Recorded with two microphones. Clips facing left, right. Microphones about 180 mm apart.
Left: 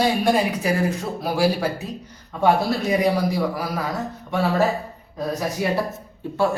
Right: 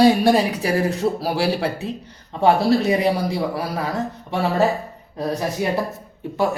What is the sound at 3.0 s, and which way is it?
Speech, 30° right (ahead or behind).